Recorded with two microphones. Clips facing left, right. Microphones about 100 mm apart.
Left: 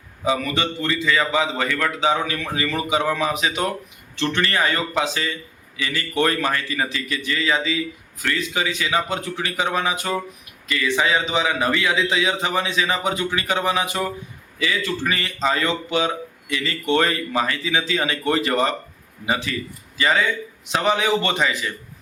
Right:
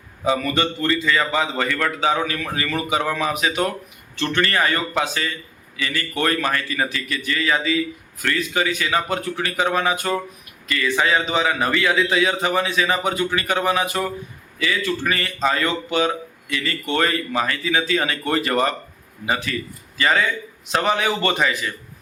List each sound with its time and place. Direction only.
0.3 s a man's voice: 15° left (ahead or behind)
2.0 s a man's voice: 20° left (ahead or behind)